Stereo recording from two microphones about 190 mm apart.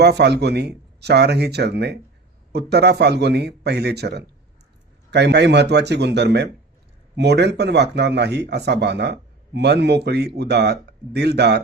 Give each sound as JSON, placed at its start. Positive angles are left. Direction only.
{"t": 0.0, "sound": "speech", "side_deg": -60}